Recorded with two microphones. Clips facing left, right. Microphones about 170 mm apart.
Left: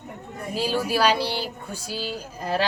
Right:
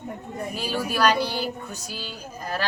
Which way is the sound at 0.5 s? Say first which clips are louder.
Left 5 dB; 30° left (ahead or behind).